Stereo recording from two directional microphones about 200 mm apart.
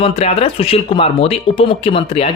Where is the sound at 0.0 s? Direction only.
30° left (ahead or behind).